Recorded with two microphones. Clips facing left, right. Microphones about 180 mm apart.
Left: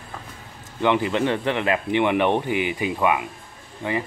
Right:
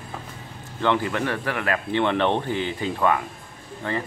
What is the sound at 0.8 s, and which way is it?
Speech, 20° left (ahead or behind).